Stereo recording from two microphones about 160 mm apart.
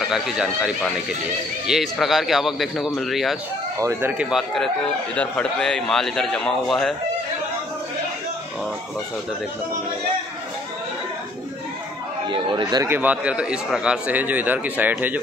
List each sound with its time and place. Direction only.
0.1 s a man's voice: 5° right (ahead or behind)
3.8 s a man's voice: 10° right (ahead or behind)
12.3 s speech: 30° right (ahead or behind)
12.8 s a man's voice: 10° right (ahead or behind)